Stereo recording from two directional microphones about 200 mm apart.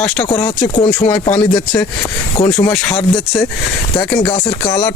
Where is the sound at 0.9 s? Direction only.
5° left (ahead or behind).